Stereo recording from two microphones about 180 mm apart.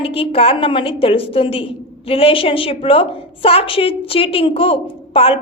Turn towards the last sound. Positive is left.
turn(degrees=30)  # may be behind; listen again after turning